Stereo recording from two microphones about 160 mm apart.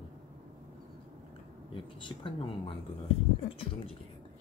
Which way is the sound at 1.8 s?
30° left (ahead or behind).